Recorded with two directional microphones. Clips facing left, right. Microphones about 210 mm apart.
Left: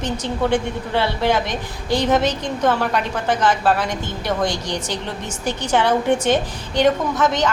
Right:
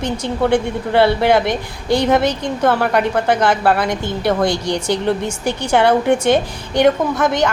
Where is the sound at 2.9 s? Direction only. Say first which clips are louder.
Right 5 dB; 60° right (ahead or behind).